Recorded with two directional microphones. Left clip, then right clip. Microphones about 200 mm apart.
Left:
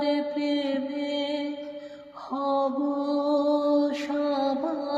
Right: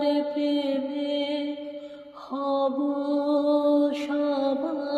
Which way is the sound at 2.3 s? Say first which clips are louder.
Even; 30° right (ahead or behind).